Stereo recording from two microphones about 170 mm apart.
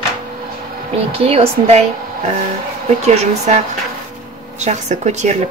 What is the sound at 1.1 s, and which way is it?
Speech, 35° right (ahead or behind).